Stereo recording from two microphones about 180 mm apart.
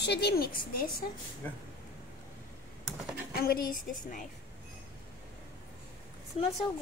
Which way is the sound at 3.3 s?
55° left (ahead or behind).